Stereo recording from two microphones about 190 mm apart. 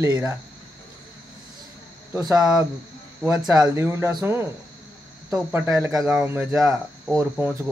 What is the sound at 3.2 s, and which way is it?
Speech, centre (ahead or behind).